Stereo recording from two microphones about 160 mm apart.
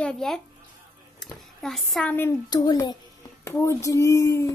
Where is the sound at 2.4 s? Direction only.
25° left (ahead or behind).